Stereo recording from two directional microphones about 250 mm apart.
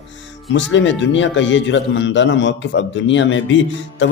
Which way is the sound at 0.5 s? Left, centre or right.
Left.